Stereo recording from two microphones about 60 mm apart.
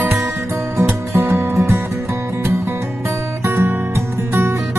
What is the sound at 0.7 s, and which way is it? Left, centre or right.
Music, right.